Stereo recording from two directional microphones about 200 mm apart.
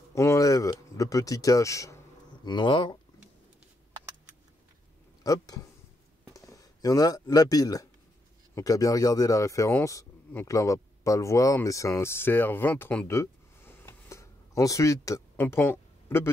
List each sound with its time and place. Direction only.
0.1 s a sound: 15° left (ahead or behind)
2.4 s speech: 25° left (ahead or behind)
5.2 s a man's voice: 15° left (ahead or behind)